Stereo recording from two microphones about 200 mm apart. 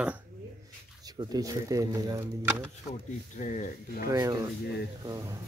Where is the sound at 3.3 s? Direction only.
40° left (ahead or behind).